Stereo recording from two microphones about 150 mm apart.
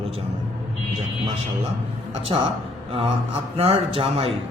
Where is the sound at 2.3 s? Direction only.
35° right (ahead or behind).